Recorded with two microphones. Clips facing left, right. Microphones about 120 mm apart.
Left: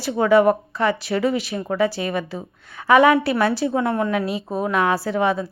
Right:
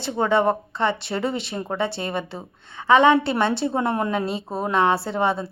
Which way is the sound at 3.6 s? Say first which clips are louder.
Left 2 dB; centre (ahead or behind).